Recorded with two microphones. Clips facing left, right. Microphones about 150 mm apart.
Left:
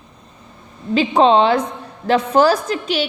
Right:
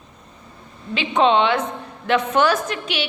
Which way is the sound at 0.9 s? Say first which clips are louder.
Left 4 dB; 35° left (ahead or behind).